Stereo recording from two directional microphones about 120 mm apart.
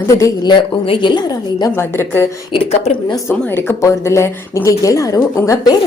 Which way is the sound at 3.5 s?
20° left (ahead or behind).